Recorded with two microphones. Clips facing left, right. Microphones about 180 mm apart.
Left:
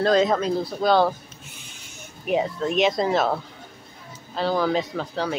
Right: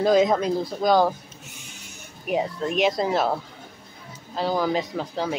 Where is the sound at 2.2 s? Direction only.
5° right (ahead or behind).